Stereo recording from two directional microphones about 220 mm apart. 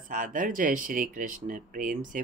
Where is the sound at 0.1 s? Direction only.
35° right (ahead or behind).